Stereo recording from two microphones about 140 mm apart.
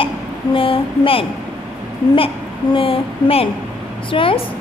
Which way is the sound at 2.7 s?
40° left (ahead or behind).